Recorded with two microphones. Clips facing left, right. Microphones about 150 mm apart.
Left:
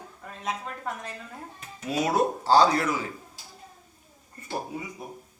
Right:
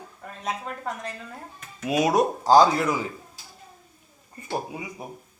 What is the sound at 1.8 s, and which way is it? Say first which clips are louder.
A man's voice: right 3 dB; 15° right (ahead or behind).